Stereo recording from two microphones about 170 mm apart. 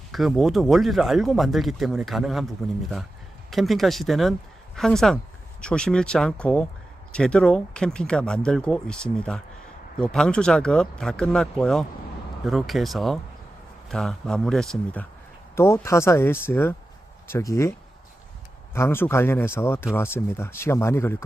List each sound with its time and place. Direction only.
0.1 s speech: centre (ahead or behind)
3.5 s speech: centre (ahead or behind)
15.5 s speech: 15° left (ahead or behind)